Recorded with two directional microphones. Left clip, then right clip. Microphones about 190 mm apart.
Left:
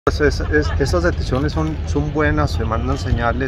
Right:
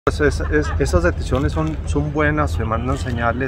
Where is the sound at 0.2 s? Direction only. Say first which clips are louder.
Left 1 dB; 15° right (ahead or behind).